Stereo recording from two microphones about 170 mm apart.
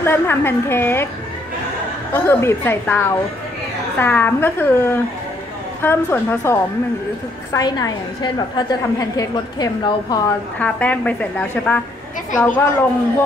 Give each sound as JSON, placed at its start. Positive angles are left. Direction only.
{"t": 0.0, "sound": "a woman's voice", "side_deg": 15}
{"t": 2.1, "sound": "a woman's voice", "side_deg": 15}
{"t": 10.6, "sound": "a woman's voice", "side_deg": 10}